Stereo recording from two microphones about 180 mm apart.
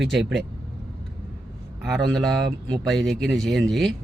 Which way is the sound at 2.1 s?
Centre (ahead or behind).